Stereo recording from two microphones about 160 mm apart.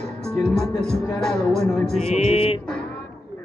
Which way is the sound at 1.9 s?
40° left (ahead or behind).